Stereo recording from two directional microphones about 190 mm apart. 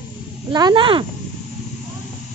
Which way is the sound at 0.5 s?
25° right (ahead or behind).